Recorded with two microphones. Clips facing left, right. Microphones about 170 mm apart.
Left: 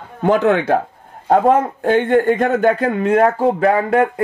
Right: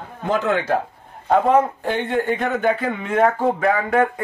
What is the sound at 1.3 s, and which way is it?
A man's voice, 50° left (ahead or behind).